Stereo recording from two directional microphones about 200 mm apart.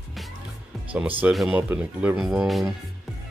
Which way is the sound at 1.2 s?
5° right (ahead or behind).